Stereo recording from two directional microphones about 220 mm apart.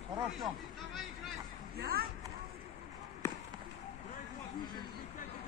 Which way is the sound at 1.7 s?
45° right (ahead or behind).